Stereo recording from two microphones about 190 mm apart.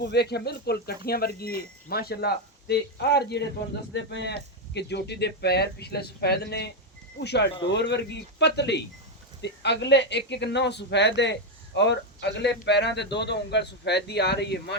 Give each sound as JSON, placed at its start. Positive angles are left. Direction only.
{"t": 0.0, "sound": "speech", "side_deg": 60}